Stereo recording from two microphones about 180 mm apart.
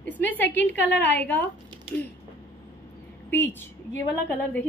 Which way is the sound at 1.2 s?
10° left (ahead or behind).